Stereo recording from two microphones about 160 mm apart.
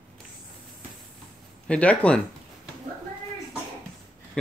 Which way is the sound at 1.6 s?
10° left (ahead or behind).